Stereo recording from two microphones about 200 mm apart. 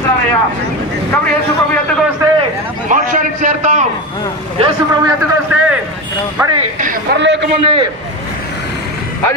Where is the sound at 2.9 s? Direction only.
40° right (ahead or behind).